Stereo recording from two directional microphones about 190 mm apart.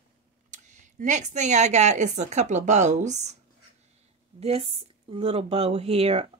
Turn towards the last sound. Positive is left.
turn(degrees=-30)  # may be behind; listen again after turning